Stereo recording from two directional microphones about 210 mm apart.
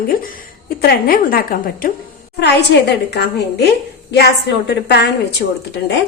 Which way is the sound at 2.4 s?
55° left (ahead or behind).